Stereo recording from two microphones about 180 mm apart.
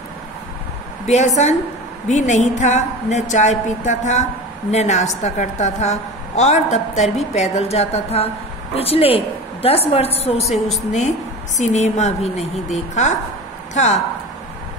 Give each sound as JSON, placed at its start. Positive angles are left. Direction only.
{"t": 1.0, "sound": "a woman's voice", "side_deg": 40}